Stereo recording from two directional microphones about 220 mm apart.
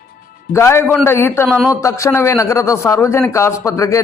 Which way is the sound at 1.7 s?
15° left (ahead or behind).